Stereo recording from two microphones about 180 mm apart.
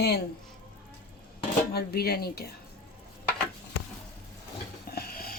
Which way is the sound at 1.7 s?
60° left (ahead or behind).